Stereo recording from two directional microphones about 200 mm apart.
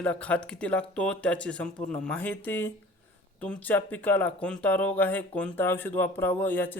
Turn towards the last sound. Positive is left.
turn(degrees=10)  # may be behind; listen again after turning